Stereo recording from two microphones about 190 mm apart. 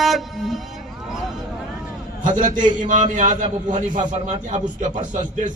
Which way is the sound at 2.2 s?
40° right (ahead or behind).